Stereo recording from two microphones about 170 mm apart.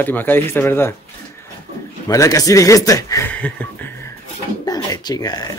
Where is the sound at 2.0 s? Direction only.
20° left (ahead or behind).